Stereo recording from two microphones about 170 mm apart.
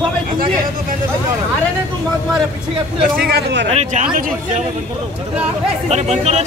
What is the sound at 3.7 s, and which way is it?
Speech, 40° right (ahead or behind).